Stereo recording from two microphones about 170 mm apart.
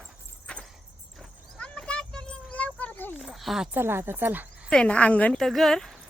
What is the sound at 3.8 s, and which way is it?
Speech, 15° right (ahead or behind).